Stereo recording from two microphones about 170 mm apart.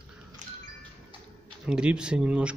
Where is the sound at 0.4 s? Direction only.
45° right (ahead or behind).